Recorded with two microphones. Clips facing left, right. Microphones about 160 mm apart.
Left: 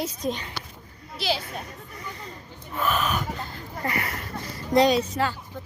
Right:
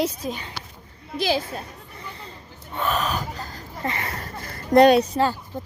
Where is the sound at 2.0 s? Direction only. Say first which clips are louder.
Even; 30° right (ahead or behind).